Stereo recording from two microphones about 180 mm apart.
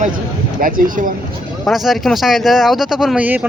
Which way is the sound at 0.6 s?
50° right (ahead or behind).